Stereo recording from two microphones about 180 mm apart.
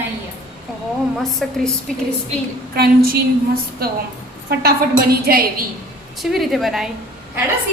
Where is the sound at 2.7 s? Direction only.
55° right (ahead or behind).